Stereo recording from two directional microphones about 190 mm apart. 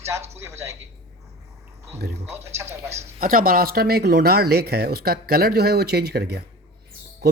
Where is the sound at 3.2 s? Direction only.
50° right (ahead or behind).